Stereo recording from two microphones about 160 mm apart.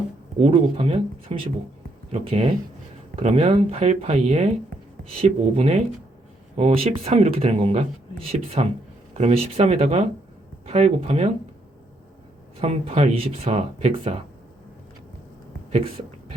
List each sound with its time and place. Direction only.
0.3 s speech: 40° right (ahead or behind)
12.5 s speech: 40° right (ahead or behind)